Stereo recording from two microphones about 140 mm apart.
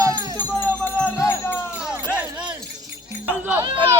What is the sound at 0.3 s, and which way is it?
Music, 15° left (ahead or behind).